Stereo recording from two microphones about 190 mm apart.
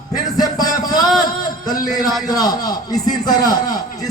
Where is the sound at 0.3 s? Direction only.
20° left (ahead or behind).